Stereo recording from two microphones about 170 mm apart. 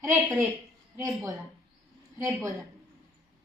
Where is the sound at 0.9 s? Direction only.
20° right (ahead or behind).